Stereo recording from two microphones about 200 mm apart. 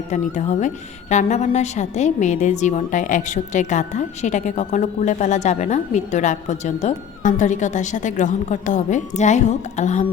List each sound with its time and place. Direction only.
0.1 s a woman's voice: 35° left (ahead or behind)